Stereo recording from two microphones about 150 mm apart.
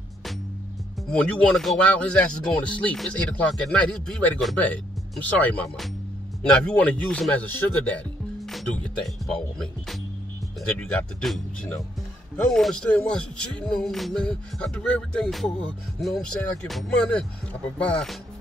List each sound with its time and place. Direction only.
1.1 s speech: 5° left (ahead or behind)
10.8 s speech: 5° left (ahead or behind)